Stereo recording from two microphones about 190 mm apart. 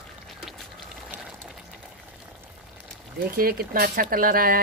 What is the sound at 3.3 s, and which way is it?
Speech, 50° right (ahead or behind).